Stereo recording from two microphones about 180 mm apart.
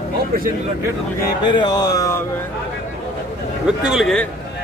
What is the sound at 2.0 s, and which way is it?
Speech, 15° left (ahead or behind).